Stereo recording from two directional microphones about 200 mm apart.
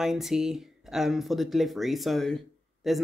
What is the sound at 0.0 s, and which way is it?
Speech, centre (ahead or behind).